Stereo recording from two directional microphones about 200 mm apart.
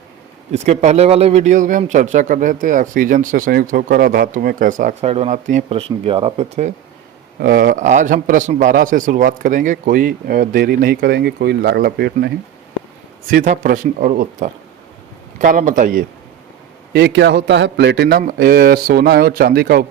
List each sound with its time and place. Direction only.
0.5 s a man's voice: 35° right (ahead or behind)
7.3 s a man's voice: 50° right (ahead or behind)
13.3 s a man's voice: 40° right (ahead or behind)
16.9 s a man's voice: 55° right (ahead or behind)